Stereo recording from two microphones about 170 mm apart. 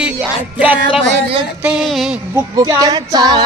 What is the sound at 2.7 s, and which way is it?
Female singing, 20° right (ahead or behind).